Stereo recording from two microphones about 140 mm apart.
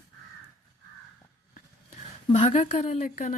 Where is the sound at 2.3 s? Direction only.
45° left (ahead or behind).